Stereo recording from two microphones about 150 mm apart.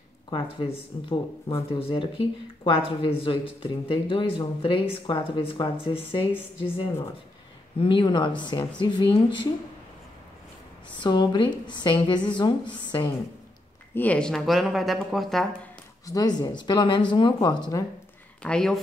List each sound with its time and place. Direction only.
0.3 s speech: 35° left (ahead or behind)
11.0 s speech: 30° left (ahead or behind)
13.9 s speech: 10° left (ahead or behind)
16.1 s speech: 25° left (ahead or behind)
18.4 s speech: 5° left (ahead or behind)